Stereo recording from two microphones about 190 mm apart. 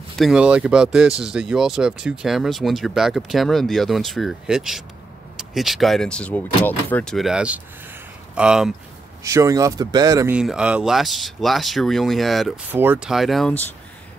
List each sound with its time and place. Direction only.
0.2 s speech: 5° right (ahead or behind)
9.2 s speech: 15° right (ahead or behind)
10.3 s speech: 5° right (ahead or behind)
12.7 s speech: 10° right (ahead or behind)